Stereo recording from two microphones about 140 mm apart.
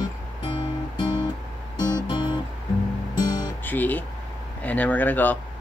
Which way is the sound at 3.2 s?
30° left (ahead or behind).